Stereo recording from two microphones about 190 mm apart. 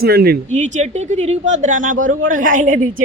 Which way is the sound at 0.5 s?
40° right (ahead or behind).